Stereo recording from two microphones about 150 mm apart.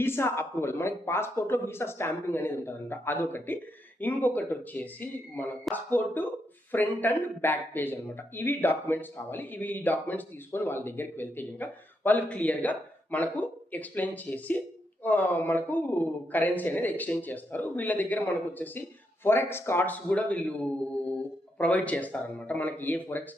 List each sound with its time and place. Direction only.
0.0 s speech: 15° left (ahead or behind)